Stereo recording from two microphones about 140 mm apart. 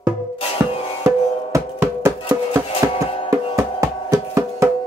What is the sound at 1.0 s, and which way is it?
Music, 20° right (ahead or behind).